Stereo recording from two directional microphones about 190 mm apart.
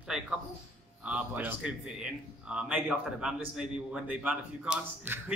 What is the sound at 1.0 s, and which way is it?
Speech, 10° right (ahead or behind).